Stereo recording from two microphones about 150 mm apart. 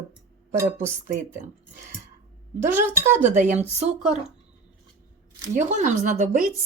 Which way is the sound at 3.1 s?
55° right (ahead or behind).